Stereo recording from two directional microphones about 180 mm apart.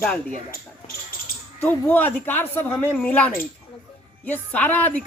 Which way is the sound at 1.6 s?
10° left (ahead or behind).